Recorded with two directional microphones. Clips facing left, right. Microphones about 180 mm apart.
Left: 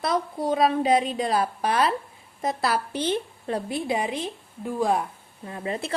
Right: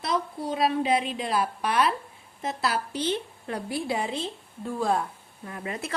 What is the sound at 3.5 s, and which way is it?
A woman's voice, 25° left (ahead or behind).